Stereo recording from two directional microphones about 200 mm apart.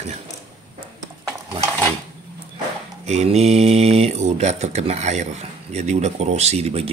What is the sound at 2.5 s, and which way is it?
Speech, 35° right (ahead or behind).